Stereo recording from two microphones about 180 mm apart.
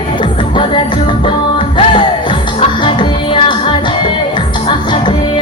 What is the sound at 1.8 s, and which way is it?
Music, 30° left (ahead or behind).